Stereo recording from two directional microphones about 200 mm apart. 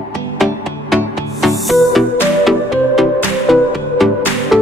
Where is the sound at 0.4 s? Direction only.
Centre (ahead or behind).